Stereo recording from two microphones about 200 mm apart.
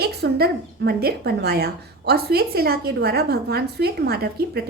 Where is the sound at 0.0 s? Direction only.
55° right (ahead or behind).